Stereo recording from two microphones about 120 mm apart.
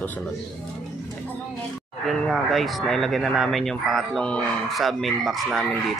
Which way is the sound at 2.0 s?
Centre (ahead or behind).